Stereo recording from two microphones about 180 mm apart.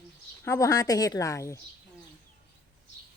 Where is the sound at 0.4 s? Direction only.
15° left (ahead or behind).